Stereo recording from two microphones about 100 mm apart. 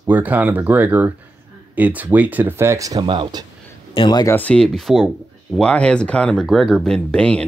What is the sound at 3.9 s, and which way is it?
Speech, 50° left (ahead or behind).